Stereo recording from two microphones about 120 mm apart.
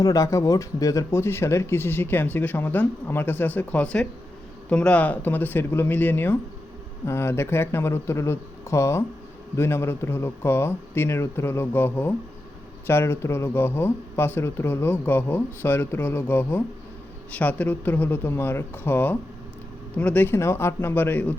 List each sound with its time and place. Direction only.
0.0 s speech: 30° left (ahead or behind)